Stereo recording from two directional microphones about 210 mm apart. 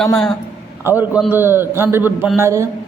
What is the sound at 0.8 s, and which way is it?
A man's voice, 10° right (ahead or behind).